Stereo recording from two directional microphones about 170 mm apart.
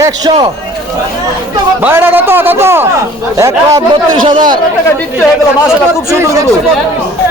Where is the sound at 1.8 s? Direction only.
10° right (ahead or behind); by 4.5 s 30° right (ahead or behind).